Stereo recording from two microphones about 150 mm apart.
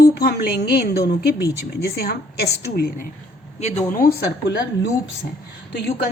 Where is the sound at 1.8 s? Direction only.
90° left.